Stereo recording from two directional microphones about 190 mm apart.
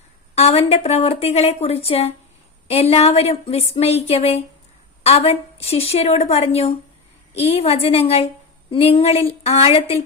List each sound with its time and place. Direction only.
0.3 s a woman's voice: 35° left (ahead or behind)